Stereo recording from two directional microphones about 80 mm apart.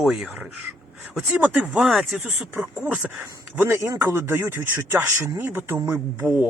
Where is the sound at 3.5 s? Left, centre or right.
Right.